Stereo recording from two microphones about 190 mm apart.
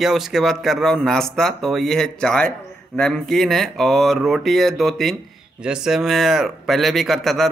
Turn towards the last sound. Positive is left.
turn(degrees=0)  # may be behind; listen again after turning